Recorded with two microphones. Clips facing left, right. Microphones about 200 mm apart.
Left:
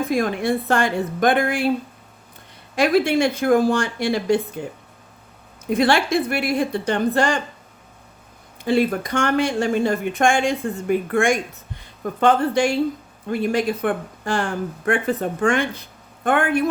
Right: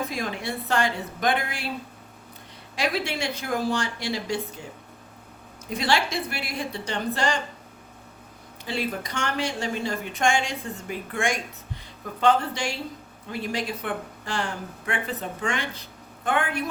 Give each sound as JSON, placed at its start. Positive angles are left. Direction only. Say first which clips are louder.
{"t": 0.1, "sound": "speech", "louder": "left 10 dB", "side_deg": 55}
{"t": 2.7, "sound": "speech", "louder": "left 10 dB", "side_deg": 50}
{"t": 8.6, "sound": "speech", "louder": "left 10 dB", "side_deg": 55}